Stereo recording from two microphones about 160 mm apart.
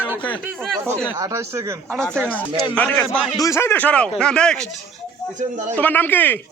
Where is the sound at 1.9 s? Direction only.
5° left (ahead or behind).